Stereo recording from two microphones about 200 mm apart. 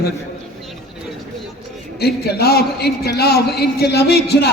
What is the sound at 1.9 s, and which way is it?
A man's voice, 50° left (ahead or behind).